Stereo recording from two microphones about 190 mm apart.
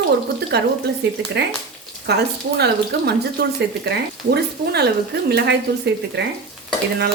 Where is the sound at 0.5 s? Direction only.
60° right (ahead or behind).